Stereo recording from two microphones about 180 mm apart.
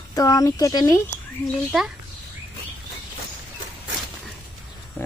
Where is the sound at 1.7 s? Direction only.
5° right (ahead or behind).